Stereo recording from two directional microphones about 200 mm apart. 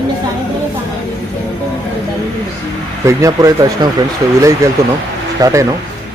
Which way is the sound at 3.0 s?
15° right (ahead or behind).